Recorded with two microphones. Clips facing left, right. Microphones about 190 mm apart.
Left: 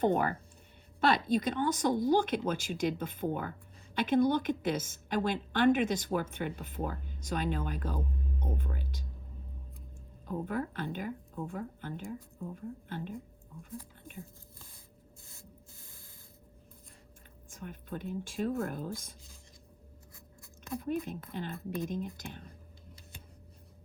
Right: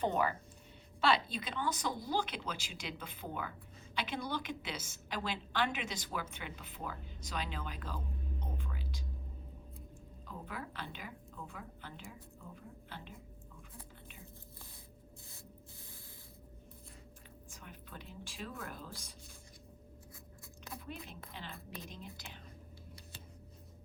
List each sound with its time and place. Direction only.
0.0 s a woman's voice: 50° left (ahead or behind)
10.2 s a woman's voice: 50° left (ahead or behind)
17.5 s a woman's voice: 50° left (ahead or behind)
20.7 s a woman's voice: 45° left (ahead or behind)